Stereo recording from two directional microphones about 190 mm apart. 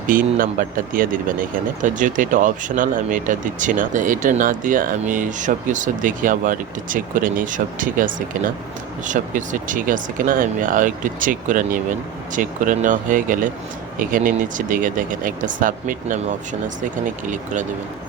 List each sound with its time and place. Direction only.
0.1 s speech: 45° right (ahead or behind)